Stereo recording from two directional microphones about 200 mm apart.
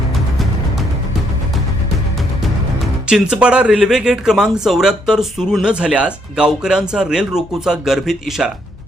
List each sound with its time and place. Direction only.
0.1 s music: centre (ahead or behind)
3.1 s speech: 5° right (ahead or behind)